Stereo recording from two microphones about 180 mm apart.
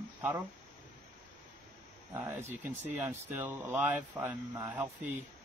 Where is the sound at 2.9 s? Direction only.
10° right (ahead or behind).